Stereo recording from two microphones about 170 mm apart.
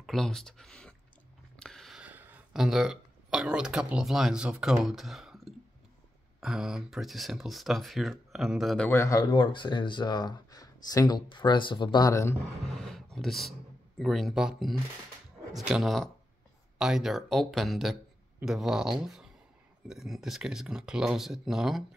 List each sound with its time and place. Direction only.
0.0 s speech: centre (ahead or behind)
8.9 s speech: 20° left (ahead or behind)
12.7 s speech: centre (ahead or behind)